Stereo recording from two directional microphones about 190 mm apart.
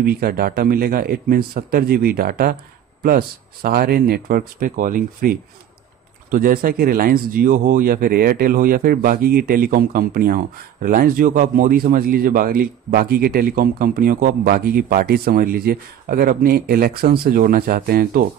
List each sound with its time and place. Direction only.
0.0 s a man's voice: 55° right (ahead or behind)